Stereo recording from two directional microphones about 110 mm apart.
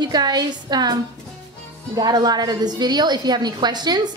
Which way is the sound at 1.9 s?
35° right (ahead or behind).